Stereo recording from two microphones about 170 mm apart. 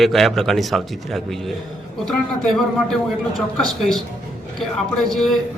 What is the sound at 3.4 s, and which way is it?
Speech, centre (ahead or behind).